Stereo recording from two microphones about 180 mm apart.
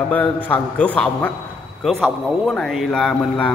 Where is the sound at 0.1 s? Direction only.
10° left (ahead or behind).